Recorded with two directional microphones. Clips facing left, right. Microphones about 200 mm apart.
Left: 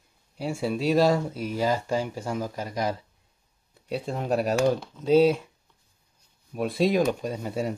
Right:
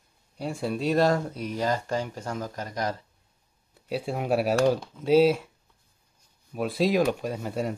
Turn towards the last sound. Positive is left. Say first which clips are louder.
# even
turn(degrees=0)  # may be behind; listen again after turning